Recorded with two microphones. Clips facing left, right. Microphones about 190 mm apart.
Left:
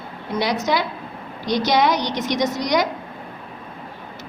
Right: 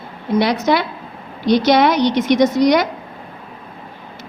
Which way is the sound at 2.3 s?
60° right (ahead or behind).